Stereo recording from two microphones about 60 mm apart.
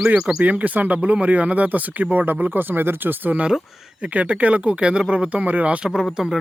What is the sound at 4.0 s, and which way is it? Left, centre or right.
Speech, right.